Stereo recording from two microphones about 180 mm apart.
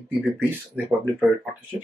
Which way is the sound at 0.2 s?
10° right (ahead or behind).